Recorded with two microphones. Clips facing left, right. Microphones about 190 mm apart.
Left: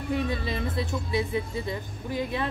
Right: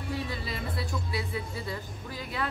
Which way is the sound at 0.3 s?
20° left (ahead or behind).